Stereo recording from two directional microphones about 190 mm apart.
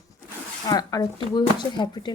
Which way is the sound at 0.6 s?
20° left (ahead or behind).